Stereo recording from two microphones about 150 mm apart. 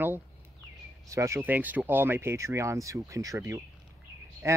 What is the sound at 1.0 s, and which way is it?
Speech, 20° right (ahead or behind).